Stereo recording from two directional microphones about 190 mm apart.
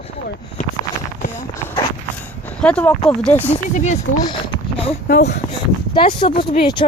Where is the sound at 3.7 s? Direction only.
40° left (ahead or behind).